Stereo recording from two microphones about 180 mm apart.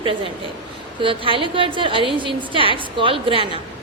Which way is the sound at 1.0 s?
30° right (ahead or behind).